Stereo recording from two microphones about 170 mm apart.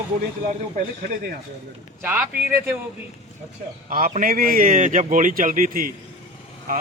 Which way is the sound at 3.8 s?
55° right (ahead or behind).